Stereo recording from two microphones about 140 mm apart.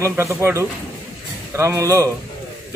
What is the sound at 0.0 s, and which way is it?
A man's voice, 20° right (ahead or behind).